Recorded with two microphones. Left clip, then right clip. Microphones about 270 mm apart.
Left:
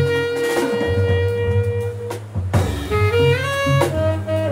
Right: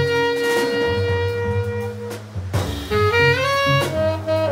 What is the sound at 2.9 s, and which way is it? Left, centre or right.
Music, centre.